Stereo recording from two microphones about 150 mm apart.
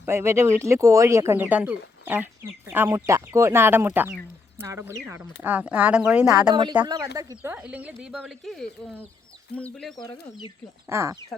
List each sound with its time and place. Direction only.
0.0 s speech: 15° right (ahead or behind)
6.5 s speech: 30° right (ahead or behind)
7.5 s speech: 10° right (ahead or behind); by 9.9 s 5° left (ahead or behind)
10.1 s speech: 30° left (ahead or behind)
10.8 s speech: 20° right (ahead or behind)